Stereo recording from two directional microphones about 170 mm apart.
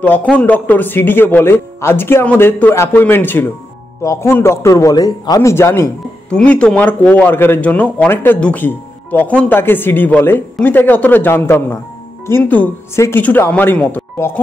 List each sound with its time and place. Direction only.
0.0 s speech: 10° left (ahead or behind)